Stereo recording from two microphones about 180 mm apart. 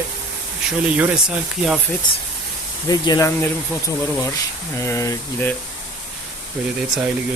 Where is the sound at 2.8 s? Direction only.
20° left (ahead or behind).